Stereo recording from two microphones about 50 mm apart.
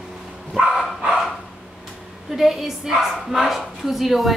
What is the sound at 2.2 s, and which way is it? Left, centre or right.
A woman's voice, centre.